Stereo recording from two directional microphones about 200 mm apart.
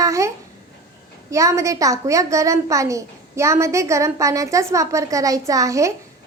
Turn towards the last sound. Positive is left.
turn(degrees=-15)  # may be behind; listen again after turning